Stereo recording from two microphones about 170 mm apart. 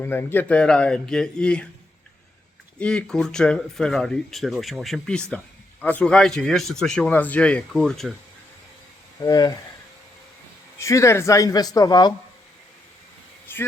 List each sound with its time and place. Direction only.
0.0 s speech: 15° left (ahead or behind)
2.7 s speech: 5° left (ahead or behind)
9.2 s speech: 20° left (ahead or behind)
10.8 s speech: 15° left (ahead or behind)
13.5 s a sound: 10° left (ahead or behind)